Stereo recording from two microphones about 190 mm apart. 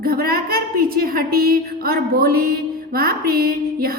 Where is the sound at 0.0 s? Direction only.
50° right (ahead or behind).